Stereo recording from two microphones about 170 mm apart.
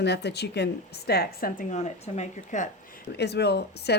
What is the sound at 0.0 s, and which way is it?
Speech, 75° left (ahead or behind).